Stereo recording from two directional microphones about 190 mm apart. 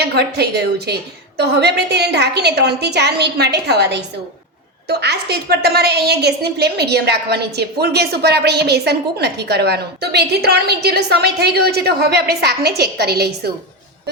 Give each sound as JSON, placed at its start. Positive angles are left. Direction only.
{"t": 0.0, "sound": "a woman's voice", "side_deg": -60}